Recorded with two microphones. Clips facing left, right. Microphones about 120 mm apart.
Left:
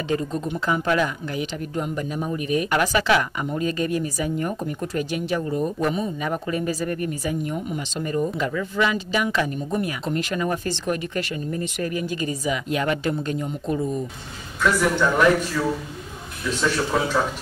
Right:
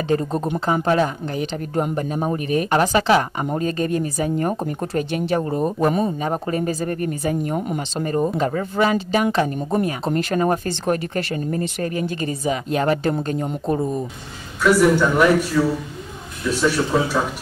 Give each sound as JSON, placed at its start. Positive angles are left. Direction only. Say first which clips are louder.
{"t": 0.1, "sound": "speech", "louder": "right 4 dB", "side_deg": -40}
{"t": 14.6, "sound": "a woman's voice", "louder": "right 5 dB", "side_deg": -10}